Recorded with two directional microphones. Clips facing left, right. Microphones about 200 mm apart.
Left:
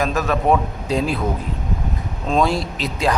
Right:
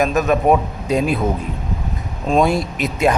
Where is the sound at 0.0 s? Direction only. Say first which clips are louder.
Right 4 dB; 20° right (ahead or behind).